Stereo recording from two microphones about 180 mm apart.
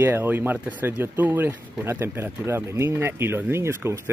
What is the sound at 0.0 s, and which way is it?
Speech, 10° right (ahead or behind).